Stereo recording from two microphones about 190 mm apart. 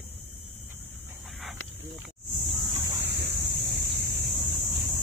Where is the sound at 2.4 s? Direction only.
30° right (ahead or behind).